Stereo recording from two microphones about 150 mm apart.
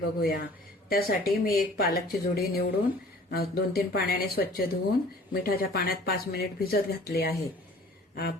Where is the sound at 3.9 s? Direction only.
85° left.